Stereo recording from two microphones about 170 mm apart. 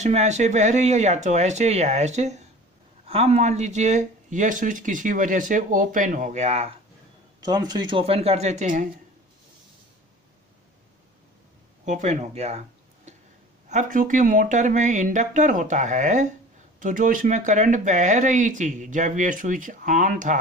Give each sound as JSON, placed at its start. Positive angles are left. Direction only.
{"t": 0.0, "sound": "speech", "side_deg": -40}
{"t": 7.3, "sound": "speech", "side_deg": -25}
{"t": 11.8, "sound": "speech", "side_deg": -45}